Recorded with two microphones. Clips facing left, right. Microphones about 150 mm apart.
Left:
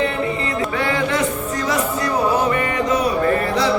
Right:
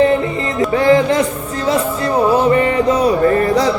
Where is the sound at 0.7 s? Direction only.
35° right (ahead or behind).